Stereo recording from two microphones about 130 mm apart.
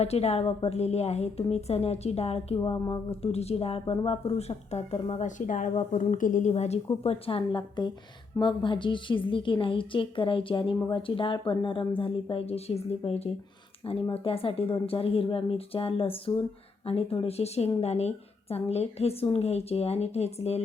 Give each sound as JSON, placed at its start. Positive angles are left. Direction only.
{"t": 0.0, "sound": "a woman's voice", "side_deg": 55}
{"t": 2.6, "sound": "a woman's voice", "side_deg": 35}
{"t": 3.1, "sound": "a woman's voice", "side_deg": 50}
{"t": 5.5, "sound": "a woman's voice", "side_deg": 80}
{"t": 6.5, "sound": "a woman's voice", "side_deg": 55}